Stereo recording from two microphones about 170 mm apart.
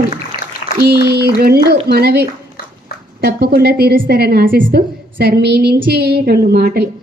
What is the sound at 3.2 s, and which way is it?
A woman's voice, 70° right (ahead or behind).